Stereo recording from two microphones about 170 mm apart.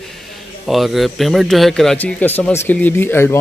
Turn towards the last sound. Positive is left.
turn(degrees=15)  # may be behind; listen again after turning